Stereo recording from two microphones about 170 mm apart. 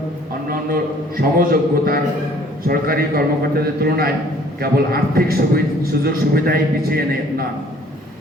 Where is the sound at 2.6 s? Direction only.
60° right (ahead or behind).